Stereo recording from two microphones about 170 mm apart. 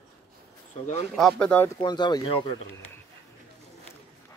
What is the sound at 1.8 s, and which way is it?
Speech, 25° left (ahead or behind).